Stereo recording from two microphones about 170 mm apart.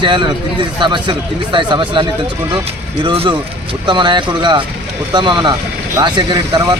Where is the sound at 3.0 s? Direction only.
30° right (ahead or behind).